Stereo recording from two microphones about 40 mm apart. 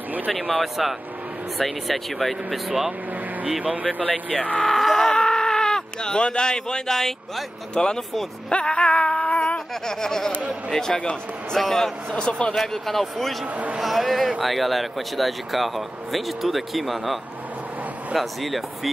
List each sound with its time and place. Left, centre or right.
0.3 s speech: centre
3.6 s speech: right
4.1 s speech: left
4.7 s a sound: centre
7.0 s speech: centre
7.7 s speech: left
8.5 s dog: left
9.8 s speech: centre
12.2 s speech: left
12.5 s speech: centre